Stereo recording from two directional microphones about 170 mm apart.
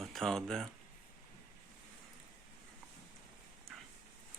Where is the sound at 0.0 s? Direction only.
Centre (ahead or behind).